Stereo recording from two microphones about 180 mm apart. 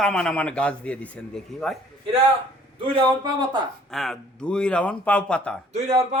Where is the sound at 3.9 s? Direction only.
Centre (ahead or behind).